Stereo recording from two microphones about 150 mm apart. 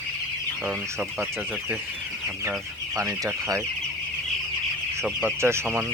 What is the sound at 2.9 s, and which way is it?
Speech, 20° right (ahead or behind).